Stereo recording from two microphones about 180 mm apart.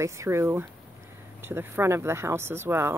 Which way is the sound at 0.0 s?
15° right (ahead or behind).